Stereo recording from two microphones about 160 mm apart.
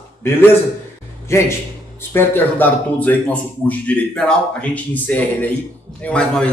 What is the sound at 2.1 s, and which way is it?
Speech, 15° left (ahead or behind).